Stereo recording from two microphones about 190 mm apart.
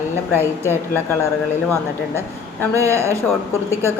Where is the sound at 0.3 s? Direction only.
10° left (ahead or behind).